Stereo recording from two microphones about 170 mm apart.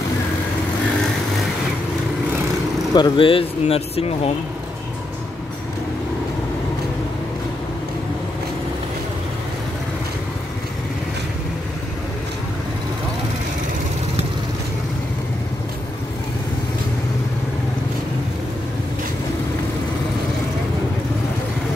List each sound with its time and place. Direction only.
2.9 s speech: 30° left (ahead or behind)